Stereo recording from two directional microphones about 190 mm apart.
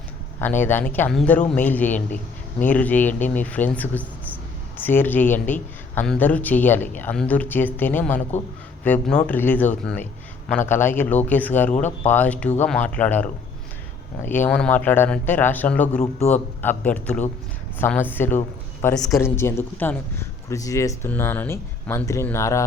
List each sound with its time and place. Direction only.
0.3 s speech: 10° left (ahead or behind)
11.7 s speech: 35° left (ahead or behind)
12.0 s speech: 10° left (ahead or behind)